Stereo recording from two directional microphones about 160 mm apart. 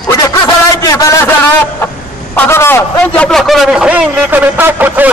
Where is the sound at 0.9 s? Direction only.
20° left (ahead or behind).